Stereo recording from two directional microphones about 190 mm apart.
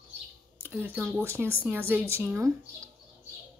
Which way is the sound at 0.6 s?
10° right (ahead or behind).